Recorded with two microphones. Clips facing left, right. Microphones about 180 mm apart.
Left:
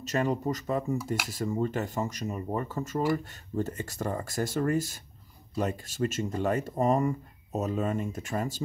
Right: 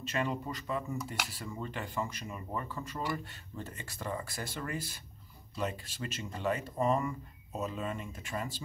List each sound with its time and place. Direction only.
0.0 s speech: 40° left (ahead or behind)